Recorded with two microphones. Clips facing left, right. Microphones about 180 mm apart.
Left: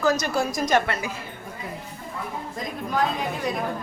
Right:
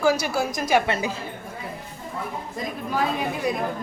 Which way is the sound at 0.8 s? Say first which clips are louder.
Right 3 dB; 25° right (ahead or behind).